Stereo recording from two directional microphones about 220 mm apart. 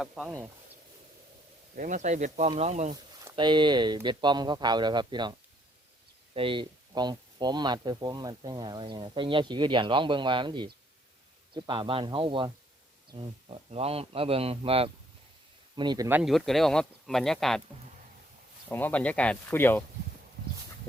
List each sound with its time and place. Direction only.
0.0 s speech: 5° right (ahead or behind)
1.7 s speech: 35° right (ahead or behind)
2.9 s speech: 20° right (ahead or behind)
6.3 s speech: 25° right (ahead or behind); by 17.6 s centre (ahead or behind)
18.7 s speech: 10° left (ahead or behind)